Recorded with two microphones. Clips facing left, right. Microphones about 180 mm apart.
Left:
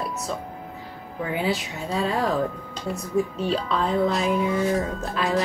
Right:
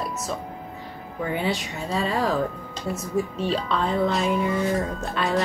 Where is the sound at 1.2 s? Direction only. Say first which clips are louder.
Even; centre (ahead or behind).